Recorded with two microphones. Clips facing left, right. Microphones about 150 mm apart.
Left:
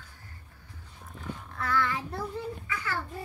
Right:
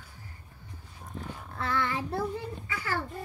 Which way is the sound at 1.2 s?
30° right (ahead or behind).